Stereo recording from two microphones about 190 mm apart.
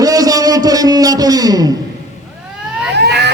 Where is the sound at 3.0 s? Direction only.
60° right (ahead or behind).